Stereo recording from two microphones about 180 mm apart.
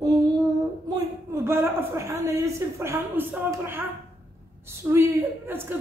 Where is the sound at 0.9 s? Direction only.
20° right (ahead or behind).